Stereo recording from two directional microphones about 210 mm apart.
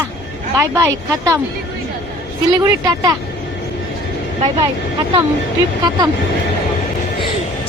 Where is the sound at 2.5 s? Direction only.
15° right (ahead or behind).